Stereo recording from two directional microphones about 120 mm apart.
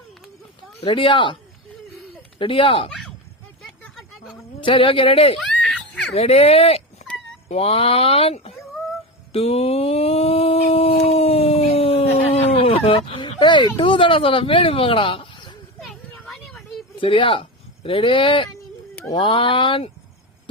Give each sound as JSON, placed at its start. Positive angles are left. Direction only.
{"t": 0.8, "sound": "speech", "side_deg": 50}
{"t": 2.4, "sound": "speech", "side_deg": 45}
{"t": 3.6, "sound": "a sound", "side_deg": 0}
{"t": 4.6, "sound": "speech", "side_deg": 45}
{"t": 5.4, "sound": "giggle", "side_deg": 5}
{"t": 6.1, "sound": "speech", "side_deg": 55}
{"t": 9.3, "sound": "a sound", "side_deg": 55}
{"t": 15.8, "sound": "vehicle", "side_deg": 5}
{"t": 17.0, "sound": "speech", "side_deg": 45}